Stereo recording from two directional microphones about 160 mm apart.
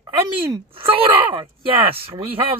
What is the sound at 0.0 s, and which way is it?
Speech, 35° right (ahead or behind).